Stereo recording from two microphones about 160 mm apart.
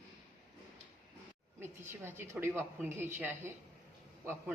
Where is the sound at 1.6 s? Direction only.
15° right (ahead or behind).